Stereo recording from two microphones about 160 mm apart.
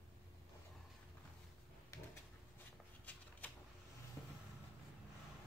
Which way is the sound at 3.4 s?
10° left (ahead or behind).